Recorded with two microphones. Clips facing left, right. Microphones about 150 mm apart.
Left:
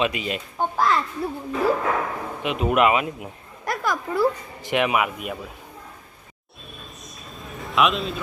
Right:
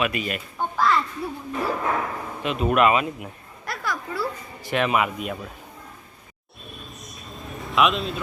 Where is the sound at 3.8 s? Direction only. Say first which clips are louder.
Left 4 dB; 20° left (ahead or behind).